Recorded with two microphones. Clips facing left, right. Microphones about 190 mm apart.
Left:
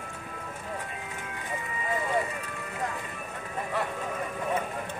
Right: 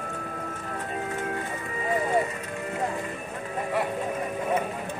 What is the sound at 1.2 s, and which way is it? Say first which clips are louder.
Music: right 9 dB; 50° right (ahead or behind).